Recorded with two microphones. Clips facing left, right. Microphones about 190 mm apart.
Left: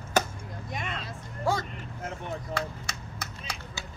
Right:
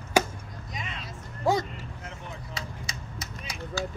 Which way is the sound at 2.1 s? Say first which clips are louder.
Left 10 dB; 60° left (ahead or behind).